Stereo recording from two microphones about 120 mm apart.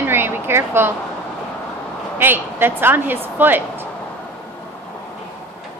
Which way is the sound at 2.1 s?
15° right (ahead or behind).